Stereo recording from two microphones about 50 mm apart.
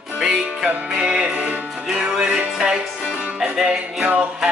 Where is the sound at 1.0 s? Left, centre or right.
Right.